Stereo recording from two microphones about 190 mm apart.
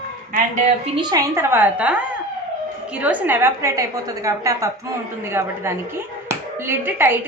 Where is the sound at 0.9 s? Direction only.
15° right (ahead or behind).